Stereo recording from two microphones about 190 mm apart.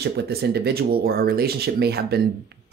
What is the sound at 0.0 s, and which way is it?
Speech, 55° right (ahead or behind).